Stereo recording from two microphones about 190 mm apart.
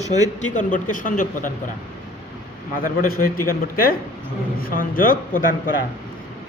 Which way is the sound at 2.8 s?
50° left (ahead or behind).